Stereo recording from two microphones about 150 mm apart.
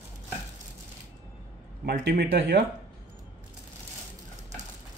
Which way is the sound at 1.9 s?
90° right.